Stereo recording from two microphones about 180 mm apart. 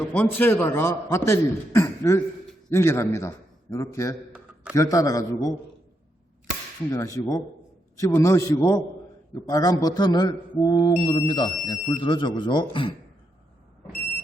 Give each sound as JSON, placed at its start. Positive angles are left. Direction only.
{"t": 0.1, "sound": "a man's voice", "side_deg": 10}
{"t": 6.9, "sound": "a man's voice", "side_deg": 20}